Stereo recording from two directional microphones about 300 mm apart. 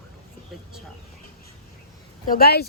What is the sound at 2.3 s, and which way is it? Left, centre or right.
Speech, left.